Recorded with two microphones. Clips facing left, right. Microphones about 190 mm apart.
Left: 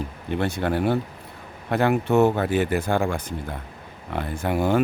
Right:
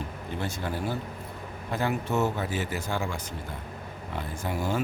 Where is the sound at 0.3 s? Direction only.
65° left (ahead or behind).